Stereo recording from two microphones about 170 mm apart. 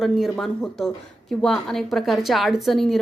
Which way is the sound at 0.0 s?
Centre (ahead or behind).